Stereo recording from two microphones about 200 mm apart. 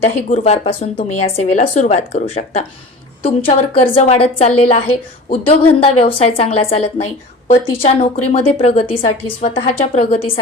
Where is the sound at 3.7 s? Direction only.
25° left (ahead or behind).